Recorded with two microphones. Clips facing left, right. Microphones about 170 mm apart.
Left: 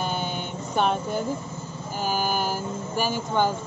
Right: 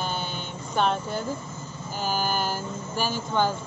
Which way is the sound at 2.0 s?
10° left (ahead or behind).